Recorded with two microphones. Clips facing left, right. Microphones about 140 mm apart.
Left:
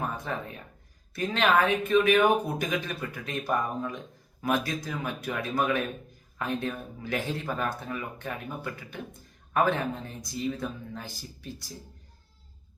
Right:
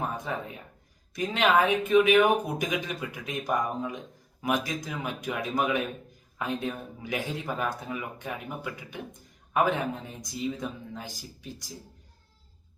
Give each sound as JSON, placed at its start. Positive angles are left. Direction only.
{"t": 0.0, "sound": "speech", "side_deg": -15}